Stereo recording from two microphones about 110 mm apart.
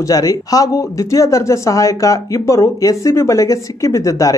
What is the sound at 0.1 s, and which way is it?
Speech, 35° left (ahead or behind).